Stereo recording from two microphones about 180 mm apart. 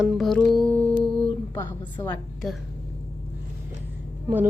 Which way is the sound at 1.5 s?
20° left (ahead or behind).